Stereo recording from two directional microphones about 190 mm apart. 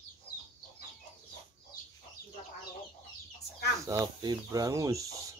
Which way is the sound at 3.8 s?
20° right (ahead or behind).